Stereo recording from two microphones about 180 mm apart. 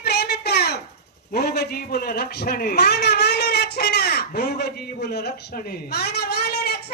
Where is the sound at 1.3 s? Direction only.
60° left (ahead or behind).